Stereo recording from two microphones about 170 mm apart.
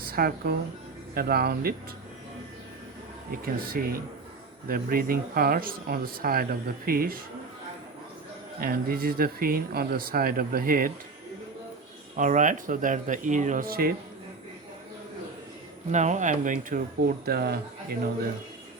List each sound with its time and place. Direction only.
0.0 s speech: 60° right (ahead or behind)
3.4 s speech: 60° right (ahead or behind)
8.6 s speech: 60° right (ahead or behind)
12.1 s speech: 50° right (ahead or behind)
15.9 s speech: 45° right (ahead or behind)
17.2 s speech: 65° right (ahead or behind)